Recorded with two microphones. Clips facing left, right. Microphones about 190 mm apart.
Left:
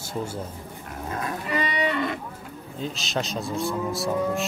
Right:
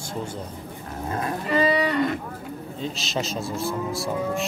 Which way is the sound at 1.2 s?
30° right (ahead or behind).